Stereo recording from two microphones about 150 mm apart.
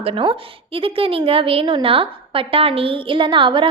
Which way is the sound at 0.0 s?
35° right (ahead or behind).